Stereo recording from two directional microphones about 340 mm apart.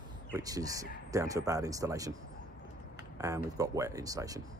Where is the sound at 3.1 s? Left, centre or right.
Centre.